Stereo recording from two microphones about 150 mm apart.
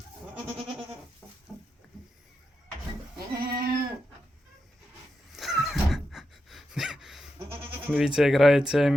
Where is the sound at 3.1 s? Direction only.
90° right.